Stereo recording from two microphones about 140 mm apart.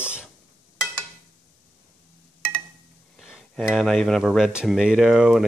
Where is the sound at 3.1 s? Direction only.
Centre (ahead or behind).